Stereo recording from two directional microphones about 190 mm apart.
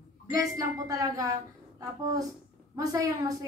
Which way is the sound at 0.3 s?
20° right (ahead or behind).